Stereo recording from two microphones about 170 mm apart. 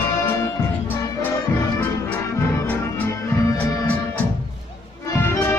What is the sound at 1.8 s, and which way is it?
Music, 10° left (ahead or behind).